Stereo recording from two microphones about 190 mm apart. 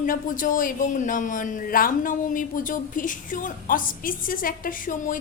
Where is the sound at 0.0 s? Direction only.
45° left (ahead or behind).